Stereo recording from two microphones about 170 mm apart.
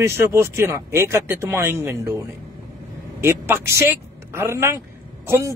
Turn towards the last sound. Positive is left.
turn(degrees=-15)  # may be behind; listen again after turning